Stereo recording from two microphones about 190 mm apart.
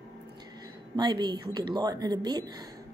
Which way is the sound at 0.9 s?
20° right (ahead or behind).